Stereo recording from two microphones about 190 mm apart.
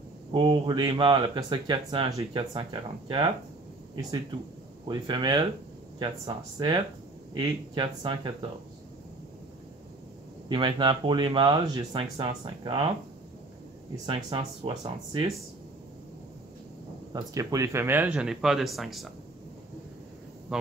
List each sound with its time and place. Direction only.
0.3 s speech: 25° right (ahead or behind)
4.8 s speech: 25° right (ahead or behind)
10.5 s speech: 25° right (ahead or behind)
14.0 s speech: 30° right (ahead or behind)
17.1 s speech: 20° right (ahead or behind); by 19.0 s centre (ahead or behind)